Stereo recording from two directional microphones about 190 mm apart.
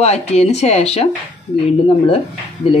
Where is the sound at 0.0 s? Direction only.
35° left (ahead or behind).